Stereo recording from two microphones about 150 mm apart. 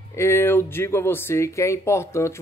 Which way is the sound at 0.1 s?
15° left (ahead or behind).